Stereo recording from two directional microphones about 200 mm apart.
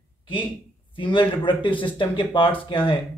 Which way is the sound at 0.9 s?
25° left (ahead or behind).